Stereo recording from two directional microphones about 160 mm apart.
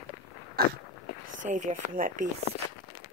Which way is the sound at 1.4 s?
50° right (ahead or behind).